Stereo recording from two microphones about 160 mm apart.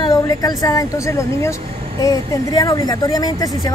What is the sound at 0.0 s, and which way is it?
Speech, 25° left (ahead or behind).